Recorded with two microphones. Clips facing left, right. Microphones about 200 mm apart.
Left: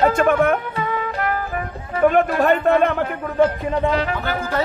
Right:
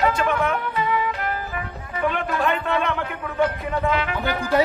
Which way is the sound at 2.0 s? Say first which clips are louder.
Left 8 dB; 45° left (ahead or behind).